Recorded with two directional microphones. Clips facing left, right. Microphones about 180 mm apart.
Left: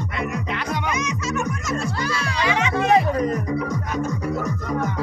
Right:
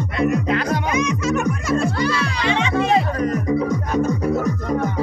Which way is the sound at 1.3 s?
60° right (ahead or behind).